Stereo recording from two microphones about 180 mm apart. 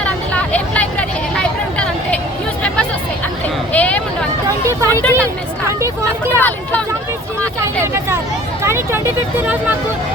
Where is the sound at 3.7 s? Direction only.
5° left (ahead or behind).